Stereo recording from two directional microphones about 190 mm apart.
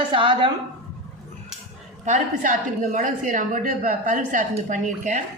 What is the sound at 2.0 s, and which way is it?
A woman's voice, 40° right (ahead or behind).